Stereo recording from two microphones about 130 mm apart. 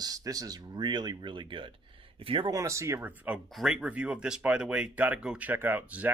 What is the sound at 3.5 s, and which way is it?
Speech, 5° right (ahead or behind).